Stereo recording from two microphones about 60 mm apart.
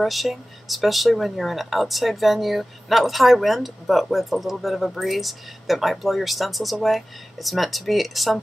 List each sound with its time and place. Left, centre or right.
0.0 s speech: centre